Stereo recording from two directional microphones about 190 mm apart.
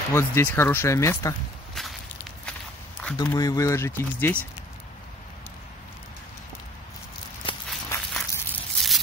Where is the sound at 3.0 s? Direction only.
15° left (ahead or behind).